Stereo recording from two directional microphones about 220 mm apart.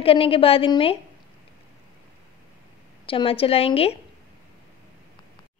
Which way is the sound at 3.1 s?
25° left (ahead or behind).